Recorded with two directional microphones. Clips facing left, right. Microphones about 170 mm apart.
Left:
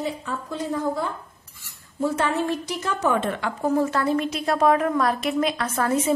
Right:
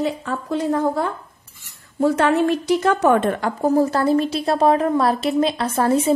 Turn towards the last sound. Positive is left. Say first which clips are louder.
# right 5 dB
turn(degrees=-30)  # may be behind; listen again after turning